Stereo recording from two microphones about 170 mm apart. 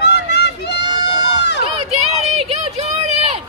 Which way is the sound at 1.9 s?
40° right (ahead or behind).